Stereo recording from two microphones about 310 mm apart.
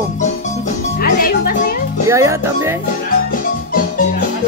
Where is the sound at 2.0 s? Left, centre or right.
Centre.